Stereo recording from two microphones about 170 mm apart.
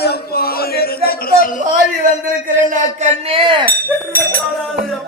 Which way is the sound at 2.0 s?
50° right (ahead or behind).